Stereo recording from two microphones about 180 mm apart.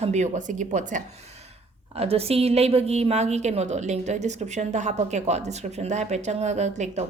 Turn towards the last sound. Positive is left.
turn(degrees=-40)  # may be behind; listen again after turning